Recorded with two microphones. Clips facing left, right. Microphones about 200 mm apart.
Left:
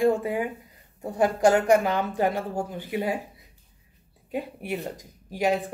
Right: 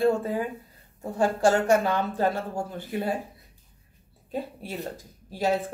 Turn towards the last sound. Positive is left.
turn(degrees=15)  # may be behind; listen again after turning